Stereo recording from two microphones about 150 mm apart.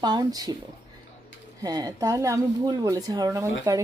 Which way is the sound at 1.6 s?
25° right (ahead or behind).